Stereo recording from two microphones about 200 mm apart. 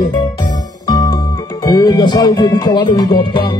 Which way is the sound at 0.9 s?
20° left (ahead or behind).